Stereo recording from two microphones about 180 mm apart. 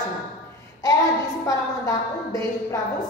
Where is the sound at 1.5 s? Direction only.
20° left (ahead or behind).